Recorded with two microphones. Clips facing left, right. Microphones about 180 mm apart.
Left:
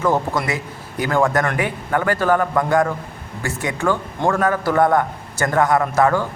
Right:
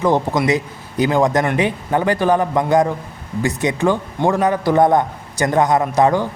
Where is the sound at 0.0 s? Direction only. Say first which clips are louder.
Right 3 dB; 20° right (ahead or behind).